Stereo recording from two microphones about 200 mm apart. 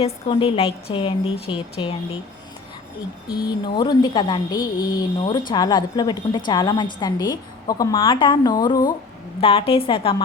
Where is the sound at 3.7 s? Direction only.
20° left (ahead or behind).